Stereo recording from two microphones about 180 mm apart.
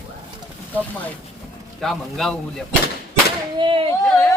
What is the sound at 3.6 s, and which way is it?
Speech, 30° right (ahead or behind).